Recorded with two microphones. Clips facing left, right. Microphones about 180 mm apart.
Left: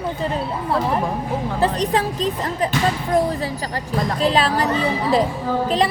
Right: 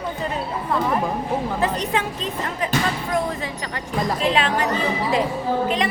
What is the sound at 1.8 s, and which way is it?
Speech, 35° left (ahead or behind).